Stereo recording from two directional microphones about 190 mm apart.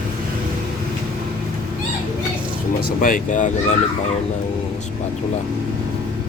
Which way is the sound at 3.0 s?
45° left (ahead or behind).